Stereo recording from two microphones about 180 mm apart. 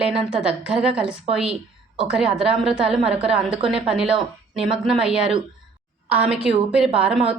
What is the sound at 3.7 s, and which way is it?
A woman's voice, 5° right (ahead or behind).